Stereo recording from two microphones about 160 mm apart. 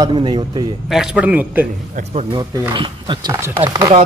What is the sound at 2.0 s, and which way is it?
Speech, 50° right (ahead or behind).